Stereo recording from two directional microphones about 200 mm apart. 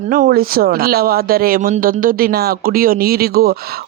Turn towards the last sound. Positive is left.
turn(degrees=-50)  # may be behind; listen again after turning